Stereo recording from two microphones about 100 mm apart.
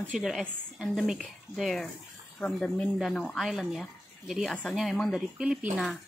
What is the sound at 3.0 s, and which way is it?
Speech, 5° left (ahead or behind).